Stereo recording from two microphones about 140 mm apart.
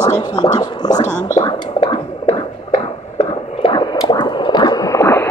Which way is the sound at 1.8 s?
50° left (ahead or behind).